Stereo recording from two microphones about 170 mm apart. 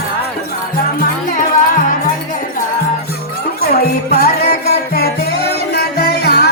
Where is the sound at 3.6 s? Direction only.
65° left (ahead or behind).